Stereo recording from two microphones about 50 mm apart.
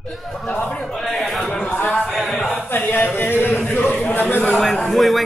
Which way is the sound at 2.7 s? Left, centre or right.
Left.